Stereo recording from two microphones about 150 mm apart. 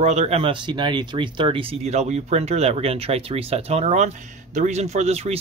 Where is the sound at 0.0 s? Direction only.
45° right (ahead or behind).